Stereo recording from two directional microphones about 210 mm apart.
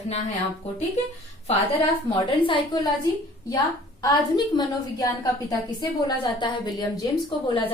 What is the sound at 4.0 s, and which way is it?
A woman's voice, 20° left (ahead or behind).